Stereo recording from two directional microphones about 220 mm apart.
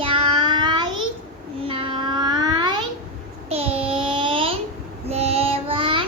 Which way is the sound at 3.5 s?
25° right (ahead or behind).